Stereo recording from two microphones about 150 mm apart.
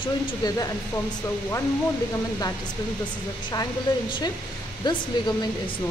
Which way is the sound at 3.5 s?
30° left (ahead or behind).